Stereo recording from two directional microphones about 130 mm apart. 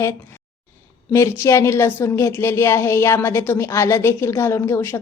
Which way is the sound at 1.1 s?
20° left (ahead or behind).